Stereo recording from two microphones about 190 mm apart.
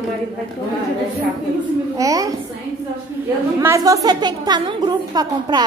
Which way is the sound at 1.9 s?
15° right (ahead or behind).